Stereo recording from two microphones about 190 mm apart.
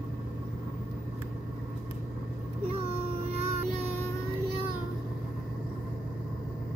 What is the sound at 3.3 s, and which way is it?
Child singing, 35° right (ahead or behind).